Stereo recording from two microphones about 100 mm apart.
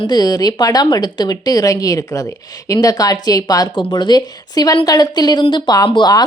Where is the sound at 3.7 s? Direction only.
50° left (ahead or behind).